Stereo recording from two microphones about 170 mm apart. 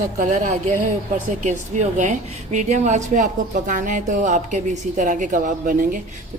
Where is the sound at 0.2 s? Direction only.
45° right (ahead or behind).